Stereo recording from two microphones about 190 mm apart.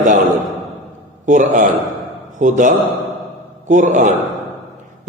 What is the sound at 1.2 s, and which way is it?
A man's voice, 40° right (ahead or behind).